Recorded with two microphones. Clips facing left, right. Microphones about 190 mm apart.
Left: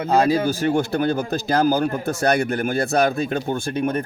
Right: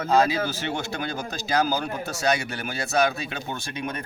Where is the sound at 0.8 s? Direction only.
55° left (ahead or behind).